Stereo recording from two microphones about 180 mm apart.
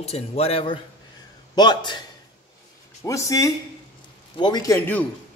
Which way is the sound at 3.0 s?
15° left (ahead or behind).